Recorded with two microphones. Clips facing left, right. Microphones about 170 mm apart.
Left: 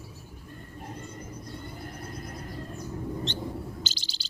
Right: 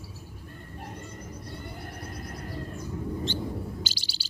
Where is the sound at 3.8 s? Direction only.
10° right (ahead or behind).